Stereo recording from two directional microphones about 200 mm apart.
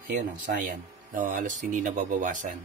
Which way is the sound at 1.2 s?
40° right (ahead or behind).